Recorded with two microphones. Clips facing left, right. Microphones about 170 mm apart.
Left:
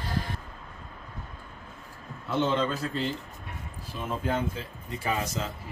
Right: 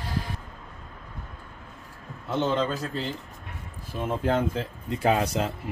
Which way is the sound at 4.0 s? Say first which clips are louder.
Right 5 dB; 50° right (ahead or behind).